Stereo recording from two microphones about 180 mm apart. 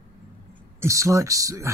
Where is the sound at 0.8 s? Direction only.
15° right (ahead or behind).